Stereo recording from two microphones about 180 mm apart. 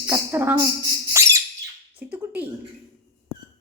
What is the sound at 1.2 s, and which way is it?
Bird, 15° right (ahead or behind).